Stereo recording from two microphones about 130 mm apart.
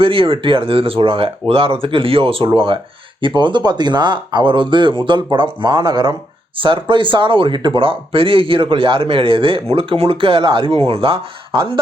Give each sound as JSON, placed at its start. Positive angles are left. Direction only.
{"t": 0.0, "sound": "speech", "side_deg": -45}